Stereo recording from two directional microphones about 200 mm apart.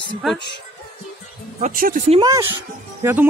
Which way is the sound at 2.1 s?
20° right (ahead or behind).